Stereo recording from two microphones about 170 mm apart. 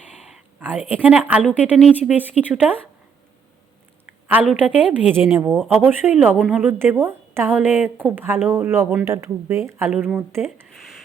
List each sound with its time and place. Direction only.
0.2 s a sound: 5° right (ahead or behind)
1.0 s speech: 10° right (ahead or behind)
4.3 s speech: 5° right (ahead or behind)